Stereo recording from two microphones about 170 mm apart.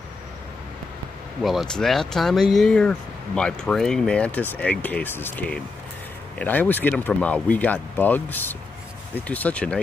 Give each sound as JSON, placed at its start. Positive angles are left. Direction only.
{"t": 1.4, "sound": "speech", "side_deg": 0}